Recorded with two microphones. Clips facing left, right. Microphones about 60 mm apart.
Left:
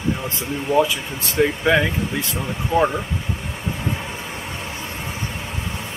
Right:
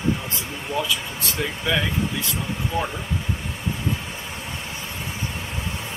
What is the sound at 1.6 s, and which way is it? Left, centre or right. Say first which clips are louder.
Speech: left 5 dB; left.